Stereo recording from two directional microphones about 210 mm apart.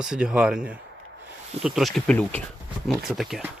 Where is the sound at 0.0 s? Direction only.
5° right (ahead or behind).